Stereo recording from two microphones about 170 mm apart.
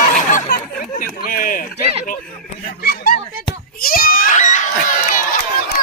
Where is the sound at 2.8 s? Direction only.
65° left (ahead or behind).